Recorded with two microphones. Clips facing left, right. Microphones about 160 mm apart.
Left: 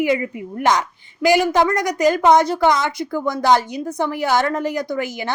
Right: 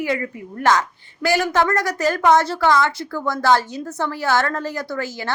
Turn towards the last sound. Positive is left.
turn(degrees=15)  # may be behind; listen again after turning